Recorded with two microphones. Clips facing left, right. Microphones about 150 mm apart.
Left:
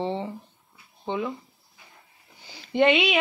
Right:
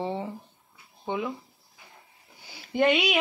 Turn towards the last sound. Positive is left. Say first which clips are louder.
# left 3 dB
turn(degrees=0)  # may be behind; listen again after turning